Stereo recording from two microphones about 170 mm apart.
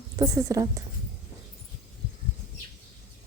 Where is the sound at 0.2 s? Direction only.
20° right (ahead or behind).